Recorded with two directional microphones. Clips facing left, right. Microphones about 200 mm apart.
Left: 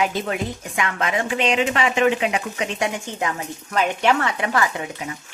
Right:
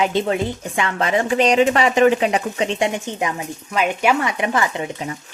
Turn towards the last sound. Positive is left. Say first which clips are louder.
# right 3 dB
turn(degrees=-30)  # may be behind; listen again after turning